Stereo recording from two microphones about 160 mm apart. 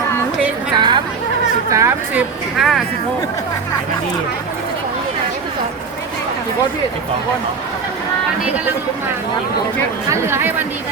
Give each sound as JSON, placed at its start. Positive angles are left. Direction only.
{"t": 0.8, "sound": "chatter", "side_deg": -30}
{"t": 1.7, "sound": "speech", "side_deg": -20}
{"t": 2.6, "sound": "speech", "side_deg": 0}
{"t": 10.1, "sound": "speech", "side_deg": -15}